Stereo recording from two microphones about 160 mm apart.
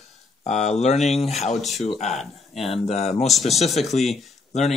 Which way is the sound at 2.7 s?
40° left (ahead or behind).